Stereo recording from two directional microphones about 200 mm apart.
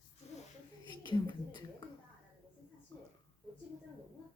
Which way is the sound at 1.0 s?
25° left (ahead or behind).